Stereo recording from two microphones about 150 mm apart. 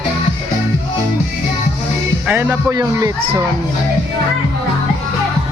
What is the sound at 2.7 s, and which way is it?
Speech, 25° right (ahead or behind).